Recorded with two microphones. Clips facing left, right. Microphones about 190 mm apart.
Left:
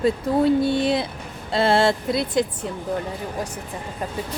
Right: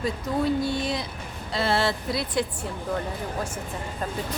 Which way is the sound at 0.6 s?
25° left (ahead or behind).